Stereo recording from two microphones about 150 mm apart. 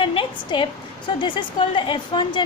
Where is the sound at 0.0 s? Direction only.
35° left (ahead or behind).